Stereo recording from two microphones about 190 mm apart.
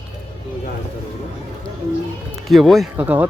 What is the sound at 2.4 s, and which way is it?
Speech, centre (ahead or behind).